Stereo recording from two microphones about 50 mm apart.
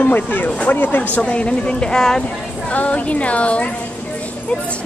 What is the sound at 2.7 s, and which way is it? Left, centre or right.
Speech, left.